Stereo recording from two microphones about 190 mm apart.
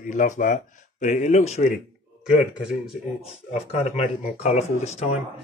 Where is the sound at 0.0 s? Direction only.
40° left (ahead or behind).